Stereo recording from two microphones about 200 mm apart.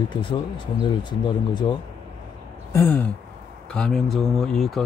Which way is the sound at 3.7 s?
Centre (ahead or behind).